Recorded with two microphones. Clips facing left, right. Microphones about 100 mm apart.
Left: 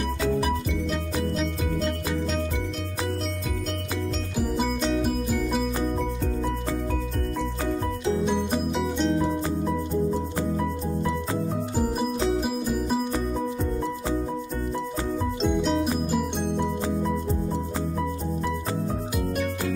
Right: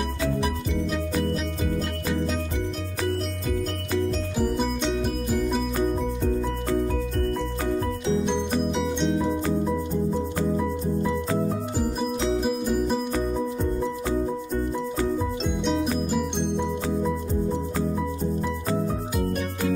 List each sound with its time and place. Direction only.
8.7 s music: centre (ahead or behind)
12.4 s music: centre (ahead or behind)
15.1 s music: centre (ahead or behind)